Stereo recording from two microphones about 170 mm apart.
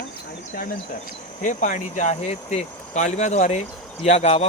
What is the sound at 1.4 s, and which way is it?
Speech, 45° left (ahead or behind).